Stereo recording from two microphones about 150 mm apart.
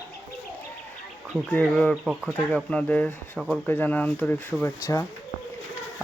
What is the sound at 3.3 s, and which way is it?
Speech, 5° right (ahead or behind).